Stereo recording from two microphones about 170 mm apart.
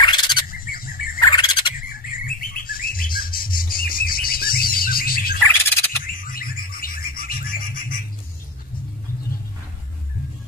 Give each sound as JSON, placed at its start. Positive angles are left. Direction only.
{"t": 0.0, "sound": "bird", "side_deg": 25}
{"t": 0.5, "sound": "bird", "side_deg": 60}
{"t": 1.2, "sound": "bird", "side_deg": 25}
{"t": 1.8, "sound": "bird", "side_deg": 55}